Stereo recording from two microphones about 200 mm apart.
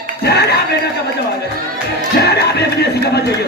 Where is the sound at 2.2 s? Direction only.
55° left (ahead or behind).